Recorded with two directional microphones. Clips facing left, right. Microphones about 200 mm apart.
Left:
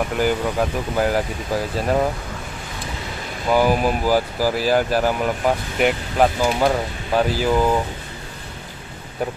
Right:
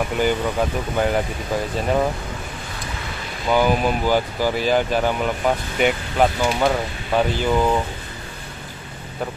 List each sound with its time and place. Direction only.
0.2 s speech: centre (ahead or behind)
3.4 s speech: 5° left (ahead or behind)